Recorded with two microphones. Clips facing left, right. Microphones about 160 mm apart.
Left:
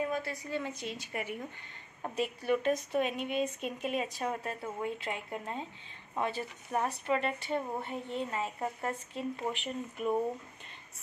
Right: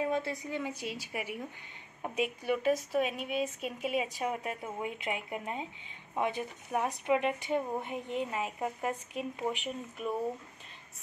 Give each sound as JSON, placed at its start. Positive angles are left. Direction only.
{"t": 0.1, "sound": "a woman's voice", "side_deg": -20}